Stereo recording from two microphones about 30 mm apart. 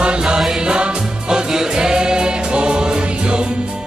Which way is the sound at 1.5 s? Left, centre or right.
Centre.